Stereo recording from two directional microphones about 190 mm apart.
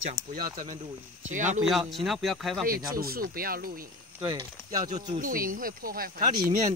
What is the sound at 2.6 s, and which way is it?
Speech, 50° right (ahead or behind).